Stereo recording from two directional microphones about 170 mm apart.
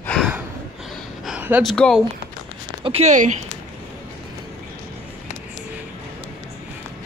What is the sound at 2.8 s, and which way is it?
Speech, 40° right (ahead or behind).